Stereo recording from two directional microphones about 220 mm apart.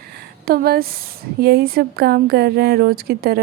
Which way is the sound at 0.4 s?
45° right (ahead or behind).